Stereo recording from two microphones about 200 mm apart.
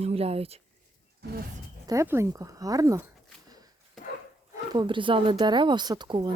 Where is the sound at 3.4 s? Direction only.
20° right (ahead or behind).